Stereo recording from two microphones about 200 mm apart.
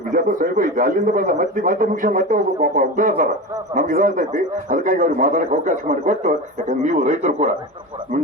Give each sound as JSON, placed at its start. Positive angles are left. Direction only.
{"t": 0.1, "sound": "a man's voice", "side_deg": -40}